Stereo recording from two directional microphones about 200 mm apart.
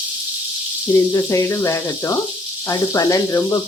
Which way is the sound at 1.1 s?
15° left (ahead or behind).